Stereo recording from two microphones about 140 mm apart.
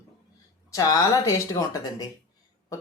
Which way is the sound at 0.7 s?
25° left (ahead or behind).